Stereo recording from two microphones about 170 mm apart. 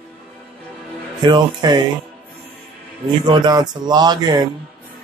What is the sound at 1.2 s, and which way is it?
Speech, 25° right (ahead or behind).